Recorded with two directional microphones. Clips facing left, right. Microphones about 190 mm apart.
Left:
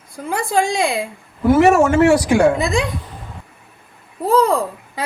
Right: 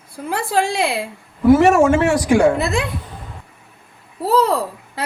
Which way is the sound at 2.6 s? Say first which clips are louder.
Left 1 dB; 5° right (ahead or behind).